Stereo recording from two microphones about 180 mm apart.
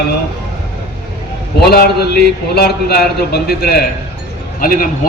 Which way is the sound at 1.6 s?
60° left (ahead or behind).